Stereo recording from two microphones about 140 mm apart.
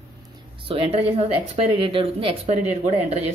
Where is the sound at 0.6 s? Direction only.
45° right (ahead or behind).